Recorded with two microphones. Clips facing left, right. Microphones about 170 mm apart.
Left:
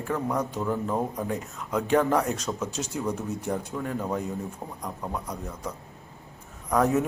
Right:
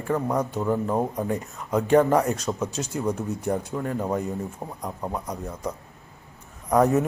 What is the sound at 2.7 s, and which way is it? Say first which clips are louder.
Speech: right 2 dB; 50° right (ahead or behind).